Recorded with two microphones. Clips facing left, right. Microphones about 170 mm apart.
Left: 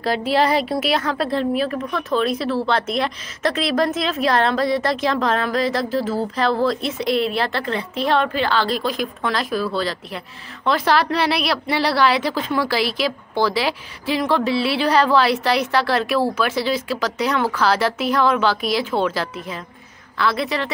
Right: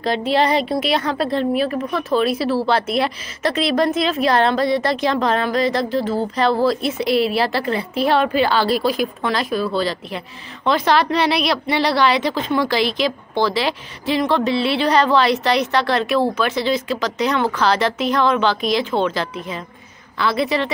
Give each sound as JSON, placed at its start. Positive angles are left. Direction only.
{"t": 0.0, "sound": "a woman's voice", "side_deg": 5}